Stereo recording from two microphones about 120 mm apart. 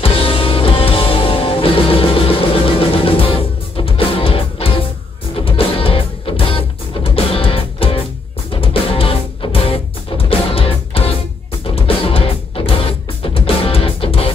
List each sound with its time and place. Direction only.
0.0 s music: 50° left (ahead or behind)